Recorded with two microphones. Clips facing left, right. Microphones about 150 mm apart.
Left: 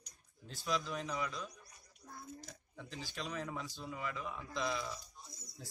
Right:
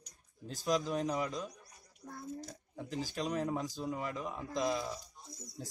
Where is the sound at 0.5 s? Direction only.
40° right (ahead or behind).